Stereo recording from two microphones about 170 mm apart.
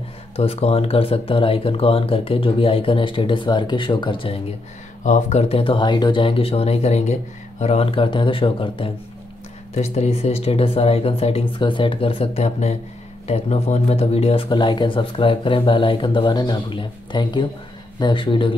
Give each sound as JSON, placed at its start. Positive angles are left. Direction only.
{"t": 0.4, "sound": "speech", "side_deg": 35}
{"t": 5.0, "sound": "speech", "side_deg": 45}